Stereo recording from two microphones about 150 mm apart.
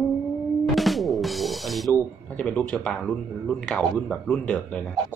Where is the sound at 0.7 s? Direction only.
Centre (ahead or behind).